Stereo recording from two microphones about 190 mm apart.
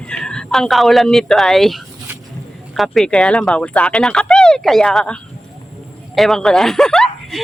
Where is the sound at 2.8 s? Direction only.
Centre (ahead or behind).